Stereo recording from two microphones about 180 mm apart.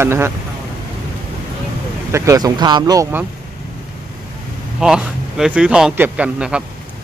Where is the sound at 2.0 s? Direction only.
15° right (ahead or behind).